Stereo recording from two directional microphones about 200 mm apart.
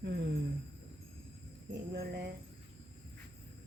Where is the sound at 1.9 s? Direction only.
55° right (ahead or behind).